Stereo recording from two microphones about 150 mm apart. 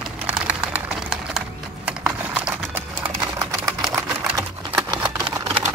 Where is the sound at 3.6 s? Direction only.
Centre (ahead or behind).